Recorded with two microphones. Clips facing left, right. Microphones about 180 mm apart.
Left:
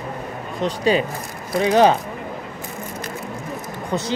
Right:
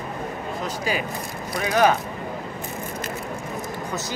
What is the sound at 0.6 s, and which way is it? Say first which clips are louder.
Speech: left 9 dB; 30° left (ahead or behind).